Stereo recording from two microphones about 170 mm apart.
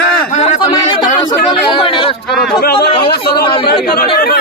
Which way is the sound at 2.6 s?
70° left (ahead or behind).